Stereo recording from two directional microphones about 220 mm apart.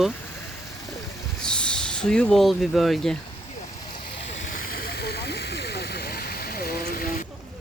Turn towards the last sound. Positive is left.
turn(degrees=45)  # may be behind; listen again after turning